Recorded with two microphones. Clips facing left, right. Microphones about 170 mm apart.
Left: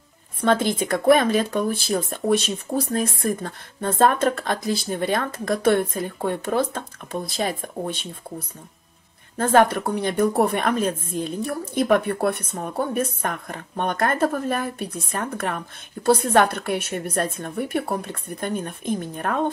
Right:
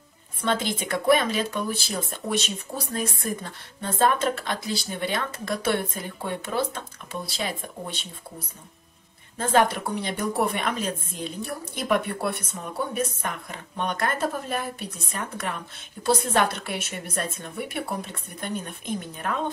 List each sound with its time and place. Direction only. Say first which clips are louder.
0.4 s speech: left 6 dB; 50° left (ahead or behind)
9.4 s speech: left 4 dB; 55° left (ahead or behind)